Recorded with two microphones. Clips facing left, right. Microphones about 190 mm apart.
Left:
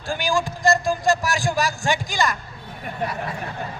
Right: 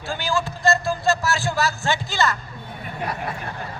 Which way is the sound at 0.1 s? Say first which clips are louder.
Left 2 dB; 15° left (ahead or behind).